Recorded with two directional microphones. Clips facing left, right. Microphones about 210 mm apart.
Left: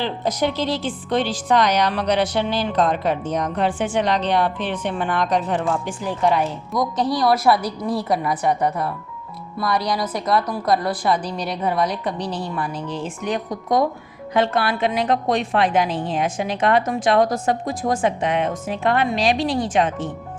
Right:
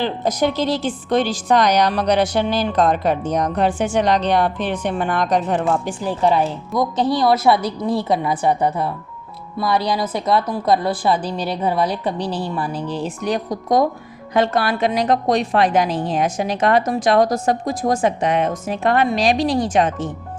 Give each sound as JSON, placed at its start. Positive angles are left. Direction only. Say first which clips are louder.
{"t": 0.0, "sound": "a woman's voice", "louder": "right 3 dB", "side_deg": -45}